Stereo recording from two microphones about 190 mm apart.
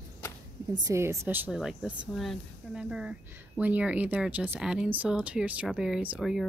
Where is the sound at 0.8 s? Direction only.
15° right (ahead or behind).